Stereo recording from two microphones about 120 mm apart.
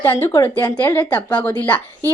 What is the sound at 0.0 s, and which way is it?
Speech, 20° left (ahead or behind).